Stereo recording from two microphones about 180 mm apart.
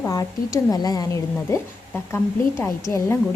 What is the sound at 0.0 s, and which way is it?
A woman's voice, 20° left (ahead or behind).